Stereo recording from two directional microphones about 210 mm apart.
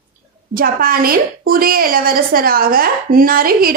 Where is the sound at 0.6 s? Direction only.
45° right (ahead or behind).